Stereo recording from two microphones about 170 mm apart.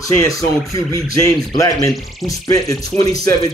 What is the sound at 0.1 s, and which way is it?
Speech, 20° left (ahead or behind).